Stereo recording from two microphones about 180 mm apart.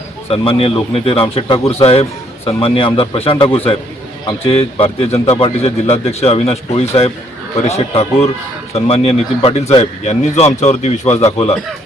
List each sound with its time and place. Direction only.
0.3 s a man's voice: 35° left (ahead or behind)